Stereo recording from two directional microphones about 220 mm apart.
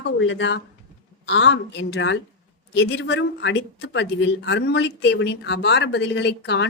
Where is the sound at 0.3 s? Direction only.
55° left (ahead or behind).